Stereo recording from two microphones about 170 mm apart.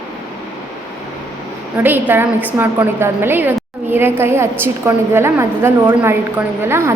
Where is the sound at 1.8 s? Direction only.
10° right (ahead or behind).